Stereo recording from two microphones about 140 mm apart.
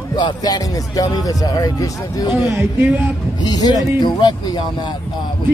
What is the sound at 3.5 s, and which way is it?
Speech, 25° left (ahead or behind).